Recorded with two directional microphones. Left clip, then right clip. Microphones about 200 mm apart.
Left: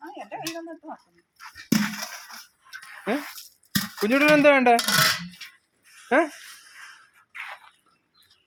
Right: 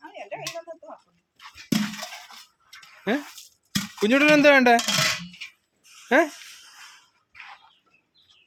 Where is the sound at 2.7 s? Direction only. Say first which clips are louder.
Left 8 dB; 50° left (ahead or behind).